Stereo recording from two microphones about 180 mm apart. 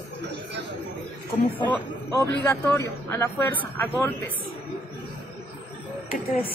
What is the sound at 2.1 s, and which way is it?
A man's voice, 15° left (ahead or behind).